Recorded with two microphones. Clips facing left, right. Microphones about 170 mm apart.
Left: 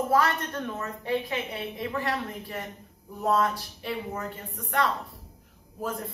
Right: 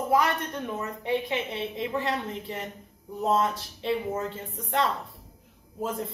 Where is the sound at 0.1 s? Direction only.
15° right (ahead or behind).